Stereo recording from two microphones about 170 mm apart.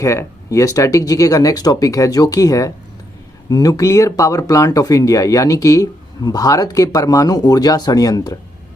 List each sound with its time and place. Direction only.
0.0 s speech: 15° left (ahead or behind)